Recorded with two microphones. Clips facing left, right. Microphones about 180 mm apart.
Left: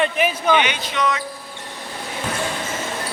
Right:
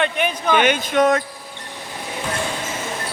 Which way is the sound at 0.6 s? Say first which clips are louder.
Right 6 dB; 50° right (ahead or behind).